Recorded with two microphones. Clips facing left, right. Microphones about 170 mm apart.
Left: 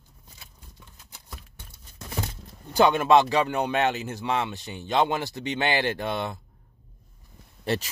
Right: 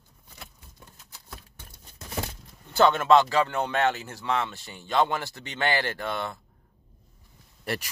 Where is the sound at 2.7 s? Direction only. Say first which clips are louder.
Left 1 dB; 15° left (ahead or behind).